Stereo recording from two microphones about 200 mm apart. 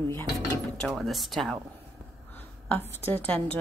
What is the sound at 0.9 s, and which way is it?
Speech, centre (ahead or behind).